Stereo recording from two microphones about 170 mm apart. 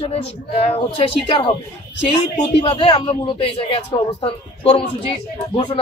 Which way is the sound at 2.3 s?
30° left (ahead or behind).